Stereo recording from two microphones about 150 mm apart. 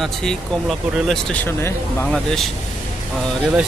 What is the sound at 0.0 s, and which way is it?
Speech, centre (ahead or behind).